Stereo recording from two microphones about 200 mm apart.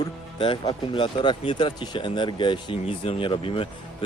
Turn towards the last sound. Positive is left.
turn(degrees=25)  # may be behind; listen again after turning